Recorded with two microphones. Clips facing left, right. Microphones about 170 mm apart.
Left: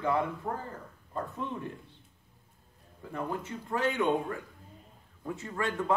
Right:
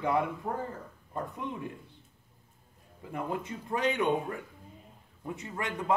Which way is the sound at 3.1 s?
15° right (ahead or behind).